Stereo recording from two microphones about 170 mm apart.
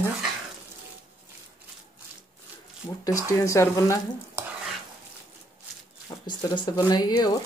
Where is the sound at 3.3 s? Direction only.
15° left (ahead or behind).